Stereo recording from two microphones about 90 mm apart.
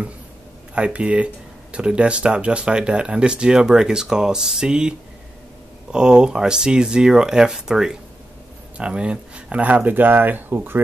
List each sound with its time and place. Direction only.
0.7 s speech: 15° right (ahead or behind)